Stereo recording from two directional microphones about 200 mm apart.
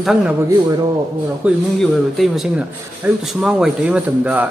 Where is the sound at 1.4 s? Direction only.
Centre (ahead or behind).